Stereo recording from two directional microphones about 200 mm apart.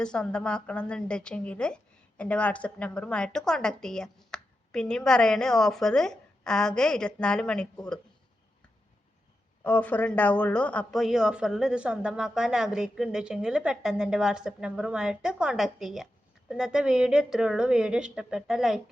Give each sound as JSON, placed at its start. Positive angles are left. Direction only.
{"t": 0.0, "sound": "a woman's voice", "side_deg": 5}
{"t": 9.6, "sound": "a woman's voice", "side_deg": 5}